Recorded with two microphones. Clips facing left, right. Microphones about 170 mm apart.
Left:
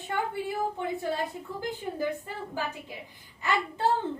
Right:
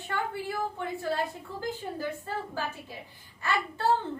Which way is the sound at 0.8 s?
20° left (ahead or behind).